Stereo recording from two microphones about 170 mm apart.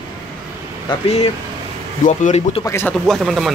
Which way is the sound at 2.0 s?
45° left (ahead or behind).